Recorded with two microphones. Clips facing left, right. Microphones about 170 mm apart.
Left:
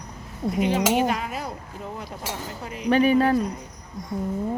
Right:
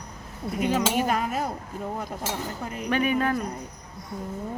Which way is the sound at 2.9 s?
30° left (ahead or behind).